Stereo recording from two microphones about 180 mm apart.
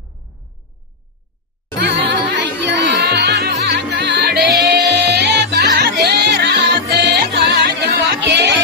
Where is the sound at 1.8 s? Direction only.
70° right (ahead or behind).